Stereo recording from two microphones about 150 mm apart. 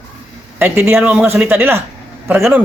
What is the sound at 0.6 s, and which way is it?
A man's voice, 15° right (ahead or behind).